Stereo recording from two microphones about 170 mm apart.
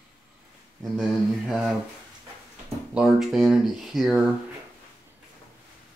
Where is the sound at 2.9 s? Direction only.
5° right (ahead or behind).